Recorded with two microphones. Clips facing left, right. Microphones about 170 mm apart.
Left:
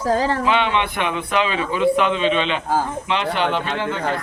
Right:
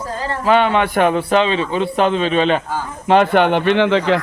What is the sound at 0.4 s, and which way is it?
A man's voice, 45° right (ahead or behind).